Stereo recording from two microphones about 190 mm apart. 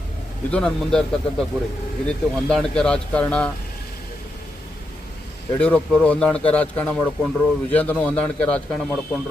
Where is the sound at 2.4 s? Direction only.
Centre (ahead or behind).